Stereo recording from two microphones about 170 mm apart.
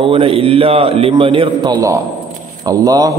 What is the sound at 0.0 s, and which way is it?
A man's voice, 30° right (ahead or behind).